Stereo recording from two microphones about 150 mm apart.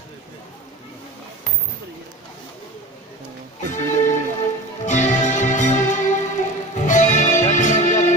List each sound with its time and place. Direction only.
3.6 s music: 55° left (ahead or behind)